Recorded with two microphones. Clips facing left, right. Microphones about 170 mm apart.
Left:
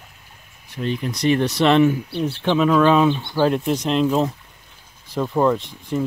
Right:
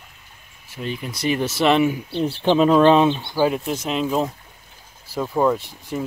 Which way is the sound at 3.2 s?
5° right (ahead or behind).